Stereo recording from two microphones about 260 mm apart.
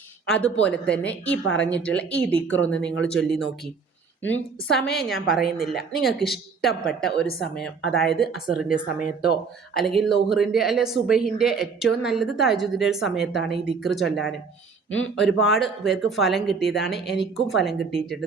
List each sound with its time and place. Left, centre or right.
0.3 s speech: centre